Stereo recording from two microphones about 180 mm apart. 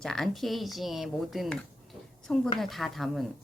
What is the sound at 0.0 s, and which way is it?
A woman's voice, 5° left (ahead or behind).